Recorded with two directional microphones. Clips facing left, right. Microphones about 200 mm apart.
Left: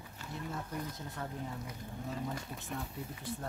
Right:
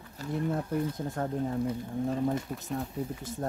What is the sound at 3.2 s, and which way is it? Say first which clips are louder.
Speech: right 6 dB; 45° right (ahead or behind).